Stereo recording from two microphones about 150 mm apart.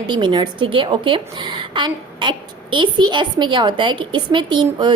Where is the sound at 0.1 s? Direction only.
30° right (ahead or behind).